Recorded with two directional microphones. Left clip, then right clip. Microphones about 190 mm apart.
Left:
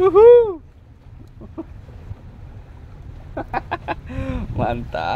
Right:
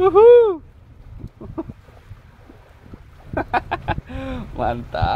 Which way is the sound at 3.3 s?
25° right (ahead or behind).